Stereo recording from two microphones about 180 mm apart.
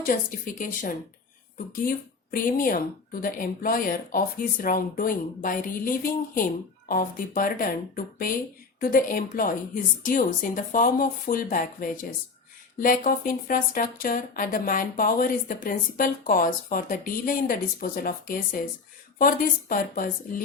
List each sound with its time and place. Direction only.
0.0 s speech: 50° left (ahead or behind)
2.3 s speech: 50° left (ahead or behind)